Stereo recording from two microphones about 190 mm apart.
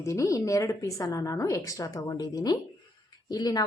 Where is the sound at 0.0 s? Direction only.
15° left (ahead or behind).